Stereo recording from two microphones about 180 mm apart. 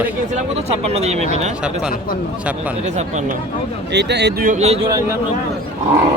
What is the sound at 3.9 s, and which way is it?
Speech, 70° right (ahead or behind).